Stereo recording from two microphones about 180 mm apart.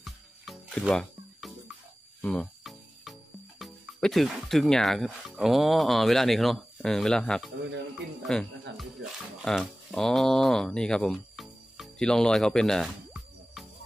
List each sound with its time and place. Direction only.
0.0 s music: centre (ahead or behind)
2.2 s speech: 5° left (ahead or behind)